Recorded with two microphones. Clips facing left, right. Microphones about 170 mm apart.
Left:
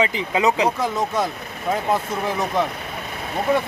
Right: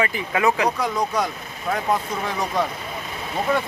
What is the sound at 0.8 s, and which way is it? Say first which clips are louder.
Speech: left 1 dB; centre (ahead or behind).